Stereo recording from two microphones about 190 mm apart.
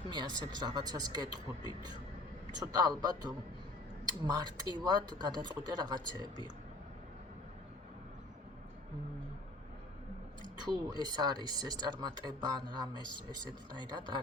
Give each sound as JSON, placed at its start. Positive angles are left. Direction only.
{"t": 0.1, "sound": "speech", "side_deg": -25}
{"t": 10.6, "sound": "speech", "side_deg": -20}